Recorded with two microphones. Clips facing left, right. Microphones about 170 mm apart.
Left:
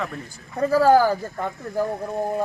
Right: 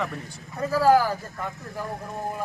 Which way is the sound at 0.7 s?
35° left (ahead or behind).